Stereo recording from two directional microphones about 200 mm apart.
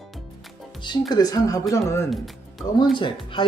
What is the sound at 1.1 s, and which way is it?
Speech, 20° left (ahead or behind).